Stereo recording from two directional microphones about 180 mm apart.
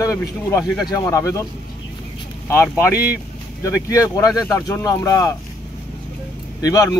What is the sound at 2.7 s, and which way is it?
Speech, 20° left (ahead or behind).